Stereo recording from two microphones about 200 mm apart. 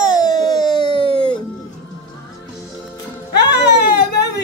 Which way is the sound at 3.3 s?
60° left (ahead or behind).